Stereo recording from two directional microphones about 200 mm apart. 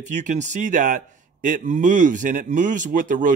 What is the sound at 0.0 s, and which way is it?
Speech, 35° right (ahead or behind).